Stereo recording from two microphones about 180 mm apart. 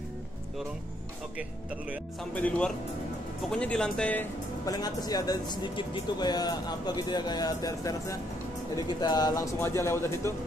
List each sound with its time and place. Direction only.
2.3 s speech: 5° left (ahead or behind)
4.6 s speech: 20° left (ahead or behind)